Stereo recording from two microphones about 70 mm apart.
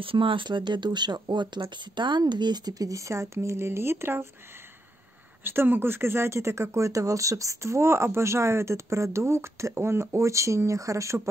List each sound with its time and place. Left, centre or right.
0.1 s speech: right
5.4 s speech: right